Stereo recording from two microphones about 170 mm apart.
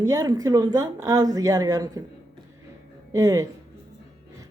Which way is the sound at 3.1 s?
20° right (ahead or behind).